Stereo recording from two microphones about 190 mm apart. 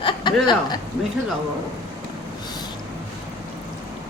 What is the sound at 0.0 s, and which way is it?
Speech, 25° left (ahead or behind).